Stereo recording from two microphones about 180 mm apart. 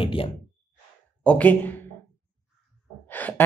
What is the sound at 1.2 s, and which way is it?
Speech, 10° left (ahead or behind).